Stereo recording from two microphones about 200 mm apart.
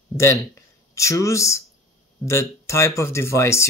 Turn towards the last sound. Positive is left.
turn(degrees=15)  # may be behind; listen again after turning